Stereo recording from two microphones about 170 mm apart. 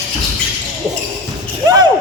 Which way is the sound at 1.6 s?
25° right (ahead or behind).